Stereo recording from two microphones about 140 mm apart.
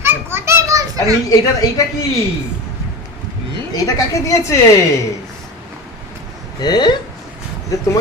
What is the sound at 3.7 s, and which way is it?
Speech, 25° left (ahead or behind).